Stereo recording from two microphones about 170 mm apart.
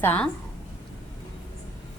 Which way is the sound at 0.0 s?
10° left (ahead or behind).